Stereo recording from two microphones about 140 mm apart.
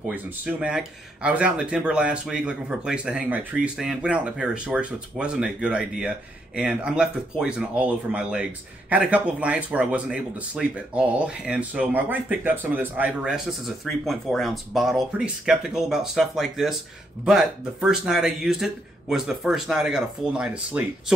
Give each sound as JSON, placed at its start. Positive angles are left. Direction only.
{"t": 0.1, "sound": "speech", "side_deg": -10}